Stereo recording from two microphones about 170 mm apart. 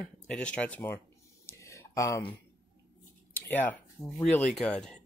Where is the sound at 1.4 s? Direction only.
15° left (ahead or behind).